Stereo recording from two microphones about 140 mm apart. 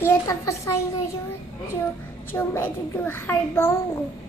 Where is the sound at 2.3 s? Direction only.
15° left (ahead or behind).